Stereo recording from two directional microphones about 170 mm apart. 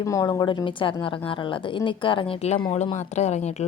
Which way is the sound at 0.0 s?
20° left (ahead or behind).